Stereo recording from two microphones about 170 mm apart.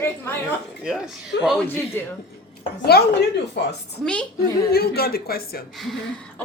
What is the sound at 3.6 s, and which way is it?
Speech, 85° left.